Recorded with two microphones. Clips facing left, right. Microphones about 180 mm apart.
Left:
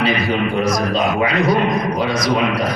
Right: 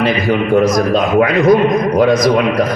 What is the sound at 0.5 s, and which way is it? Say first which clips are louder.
Speech: right 7 dB; 50° right (ahead or behind).